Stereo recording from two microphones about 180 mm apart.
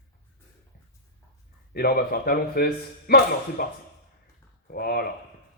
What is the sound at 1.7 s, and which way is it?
Speech, 55° left (ahead or behind).